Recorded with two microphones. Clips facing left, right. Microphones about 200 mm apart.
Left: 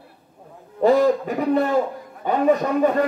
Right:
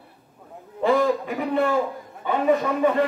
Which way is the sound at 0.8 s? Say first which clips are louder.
Left 4 dB; 40° left (ahead or behind).